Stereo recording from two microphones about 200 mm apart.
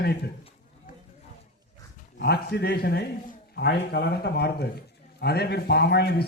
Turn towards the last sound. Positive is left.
turn(degrees=55)  # may be behind; listen again after turning